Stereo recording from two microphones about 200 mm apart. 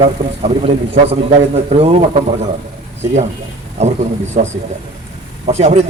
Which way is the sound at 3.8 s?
35° right (ahead or behind).